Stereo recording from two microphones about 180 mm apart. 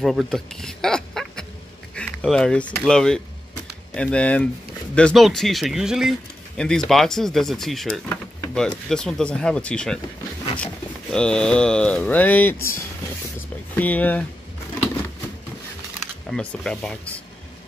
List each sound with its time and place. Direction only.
0.0 s speech: centre (ahead or behind)
2.0 s a sound: 5° left (ahead or behind)
2.8 s speech: 5° left (ahead or behind)
13.7 s speech: 10° left (ahead or behind)
16.3 s speech: 5° left (ahead or behind)